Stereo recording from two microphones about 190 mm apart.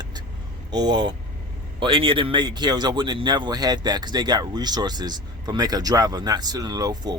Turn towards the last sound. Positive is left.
turn(degrees=-20)  # may be behind; listen again after turning